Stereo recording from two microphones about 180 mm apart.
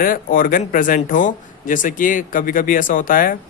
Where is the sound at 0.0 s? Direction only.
50° left (ahead or behind).